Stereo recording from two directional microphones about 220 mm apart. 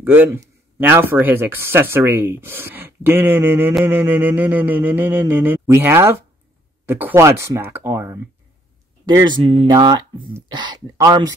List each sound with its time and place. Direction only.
0.0 s speech: 10° right (ahead or behind)